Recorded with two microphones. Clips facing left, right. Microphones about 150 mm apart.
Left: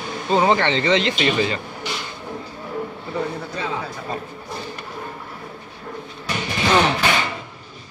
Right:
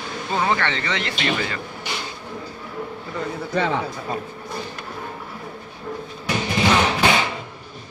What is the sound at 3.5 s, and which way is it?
Speech, 70° right (ahead or behind).